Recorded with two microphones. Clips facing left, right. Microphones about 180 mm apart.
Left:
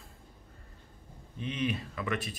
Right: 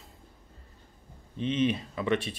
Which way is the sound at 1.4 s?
25° right (ahead or behind).